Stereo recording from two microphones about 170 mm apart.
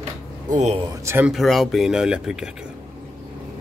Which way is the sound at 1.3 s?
Centre (ahead or behind).